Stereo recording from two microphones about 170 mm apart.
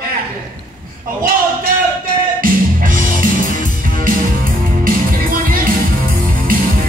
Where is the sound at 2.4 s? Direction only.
55° right (ahead or behind).